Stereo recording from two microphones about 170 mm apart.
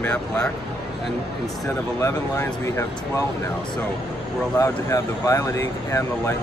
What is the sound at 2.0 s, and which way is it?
Speech, 15° left (ahead or behind).